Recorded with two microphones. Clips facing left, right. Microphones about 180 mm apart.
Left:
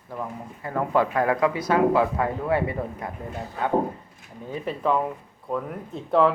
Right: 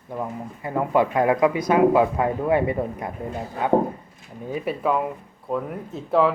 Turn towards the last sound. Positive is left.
turn(degrees=0)  # may be behind; listen again after turning